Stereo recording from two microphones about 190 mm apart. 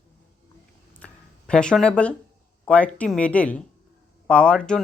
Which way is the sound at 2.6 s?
5° left (ahead or behind).